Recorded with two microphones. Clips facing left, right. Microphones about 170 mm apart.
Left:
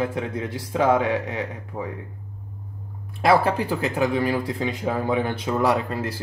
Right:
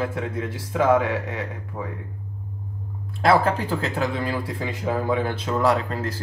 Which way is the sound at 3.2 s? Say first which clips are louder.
Even; 15° left (ahead or behind).